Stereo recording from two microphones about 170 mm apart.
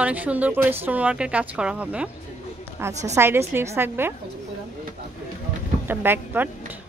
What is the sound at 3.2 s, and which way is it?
Speech, 15° right (ahead or behind).